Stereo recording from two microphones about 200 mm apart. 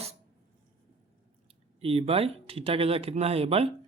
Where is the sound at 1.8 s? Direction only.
30° right (ahead or behind).